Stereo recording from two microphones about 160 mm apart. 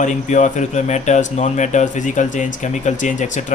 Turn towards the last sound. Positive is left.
turn(degrees=50)  # may be behind; listen again after turning